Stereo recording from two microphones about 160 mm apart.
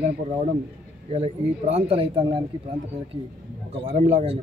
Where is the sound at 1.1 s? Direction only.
40° right (ahead or behind).